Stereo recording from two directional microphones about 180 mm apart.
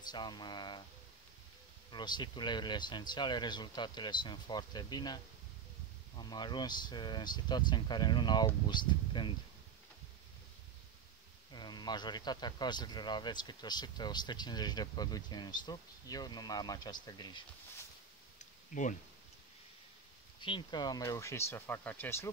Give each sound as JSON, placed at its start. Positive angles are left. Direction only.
{"t": 0.0, "sound": "a man's voice", "side_deg": 25}
{"t": 1.9, "sound": "a man's voice", "side_deg": 25}
{"t": 11.5, "sound": "a man's voice", "side_deg": 25}
{"t": 18.4, "sound": "a sound", "side_deg": 45}
{"t": 20.3, "sound": "speech", "side_deg": 25}